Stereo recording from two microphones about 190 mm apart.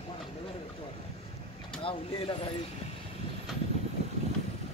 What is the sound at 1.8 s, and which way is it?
Speech, 30° left (ahead or behind).